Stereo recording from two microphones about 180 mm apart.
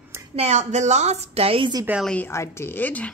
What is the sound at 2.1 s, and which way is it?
Speech, 15° left (ahead or behind).